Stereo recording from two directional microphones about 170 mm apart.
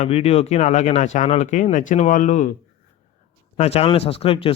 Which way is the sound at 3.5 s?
40° left (ahead or behind).